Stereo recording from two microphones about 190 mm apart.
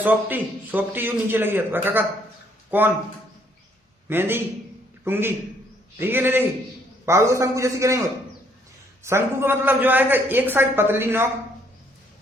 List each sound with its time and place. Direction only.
0.0 s a man's voice: 10° right (ahead or behind)
4.1 s a man's voice: 10° right (ahead or behind)